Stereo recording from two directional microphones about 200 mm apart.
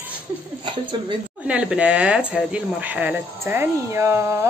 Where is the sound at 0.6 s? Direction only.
25° right (ahead or behind).